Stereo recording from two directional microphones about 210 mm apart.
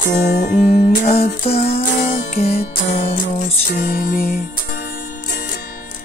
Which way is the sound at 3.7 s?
45° left (ahead or behind).